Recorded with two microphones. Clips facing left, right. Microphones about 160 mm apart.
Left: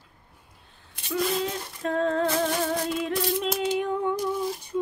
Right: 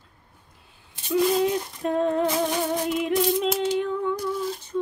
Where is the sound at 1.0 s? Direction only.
20° right (ahead or behind).